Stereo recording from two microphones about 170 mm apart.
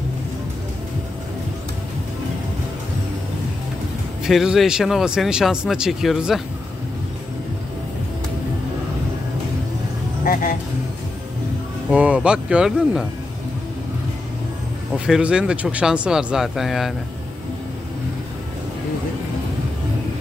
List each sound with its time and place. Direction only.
4.2 s speech: 5° right (ahead or behind)
10.2 s music: 55° left (ahead or behind)
11.9 s speech: 5° right (ahead or behind)
15.0 s speech: 5° right (ahead or behind)